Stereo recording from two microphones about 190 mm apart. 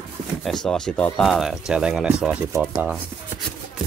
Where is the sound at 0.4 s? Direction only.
Centre (ahead or behind).